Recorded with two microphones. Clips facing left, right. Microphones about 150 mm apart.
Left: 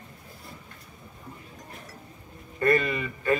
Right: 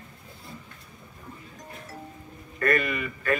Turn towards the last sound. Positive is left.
turn(degrees=25)  # may be behind; listen again after turning